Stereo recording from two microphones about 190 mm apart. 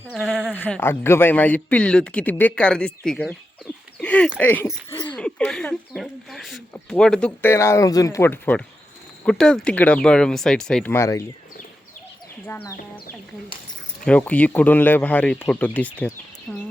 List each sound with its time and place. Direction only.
0.1 s a sound: centre (ahead or behind)
0.5 s speech: 10° left (ahead or behind)
10.9 s speech: 15° left (ahead or behind)
12.5 s speech: 10° left (ahead or behind)
14.0 s speech: 5° left (ahead or behind)